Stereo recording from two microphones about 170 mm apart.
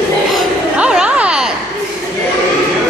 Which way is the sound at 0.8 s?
5° right (ahead or behind).